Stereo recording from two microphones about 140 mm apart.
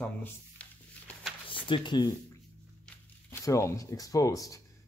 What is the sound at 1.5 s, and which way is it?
Speech, 35° left (ahead or behind).